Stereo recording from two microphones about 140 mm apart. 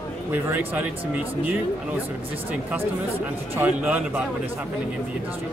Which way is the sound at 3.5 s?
10° right (ahead or behind).